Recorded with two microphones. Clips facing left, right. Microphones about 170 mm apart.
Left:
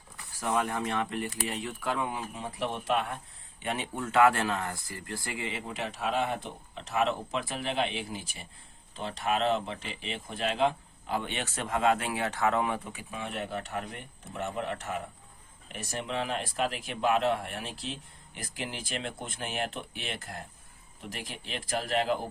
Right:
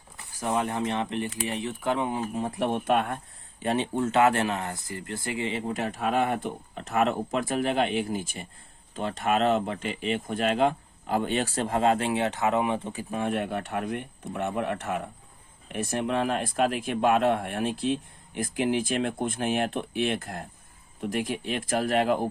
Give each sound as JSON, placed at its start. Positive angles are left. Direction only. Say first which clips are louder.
{"t": 0.3, "sound": "speech", "louder": "right 2 dB", "side_deg": -20}
{"t": 2.1, "sound": "speech", "louder": "right 7 dB", "side_deg": -45}
{"t": 3.6, "sound": "speech", "louder": "right 8 dB", "side_deg": -30}
{"t": 5.7, "sound": "speech", "louder": "right 3 dB", "side_deg": -50}
{"t": 13.0, "sound": "speech", "louder": "right 8 dB", "side_deg": -50}